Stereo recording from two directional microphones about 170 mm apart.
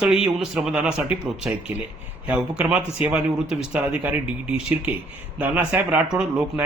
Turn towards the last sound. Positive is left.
turn(degrees=-5)  # may be behind; listen again after turning